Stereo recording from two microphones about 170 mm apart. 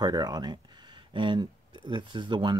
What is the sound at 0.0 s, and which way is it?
Speech, 25° right (ahead or behind).